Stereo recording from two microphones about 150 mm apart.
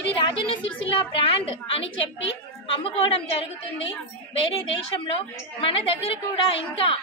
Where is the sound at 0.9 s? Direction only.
40° left (ahead or behind).